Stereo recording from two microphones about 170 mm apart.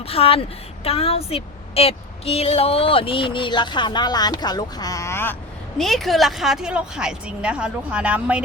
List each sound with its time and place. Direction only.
0.1 s a woman's voice: 35° left (ahead or behind); by 5.4 s 15° left (ahead or behind)
5.7 s a woman's voice: centre (ahead or behind)